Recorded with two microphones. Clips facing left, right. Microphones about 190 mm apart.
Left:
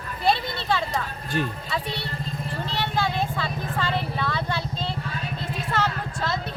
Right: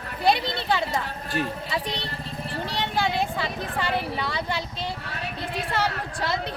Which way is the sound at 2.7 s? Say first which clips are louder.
Even; 15° right (ahead or behind).